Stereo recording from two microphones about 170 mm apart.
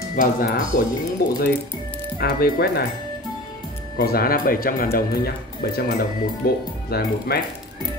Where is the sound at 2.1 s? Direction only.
65° left (ahead or behind).